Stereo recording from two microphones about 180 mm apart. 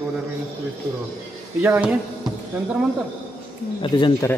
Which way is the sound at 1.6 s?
10° right (ahead or behind).